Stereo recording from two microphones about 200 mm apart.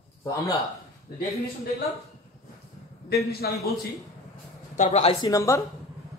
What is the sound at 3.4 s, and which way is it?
Speech, 50° left (ahead or behind).